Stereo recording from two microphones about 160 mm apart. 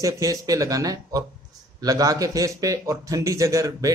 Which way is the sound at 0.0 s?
20° right (ahead or behind).